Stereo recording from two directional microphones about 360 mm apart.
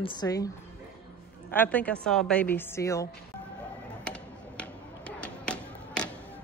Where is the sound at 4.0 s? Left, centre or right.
Centre.